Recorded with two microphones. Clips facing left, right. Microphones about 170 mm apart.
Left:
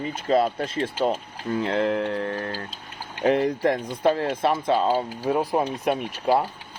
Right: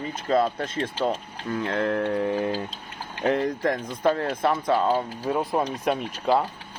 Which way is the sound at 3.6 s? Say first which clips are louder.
Left 2 dB; 30° left (ahead or behind).